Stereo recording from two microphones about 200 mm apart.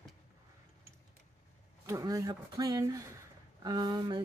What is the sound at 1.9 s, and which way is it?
Speech, 15° right (ahead or behind).